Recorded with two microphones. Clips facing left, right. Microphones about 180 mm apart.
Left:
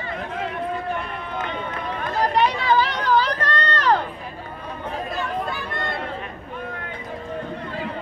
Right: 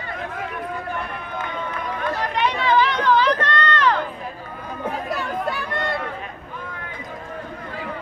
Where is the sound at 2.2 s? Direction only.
35° left (ahead or behind).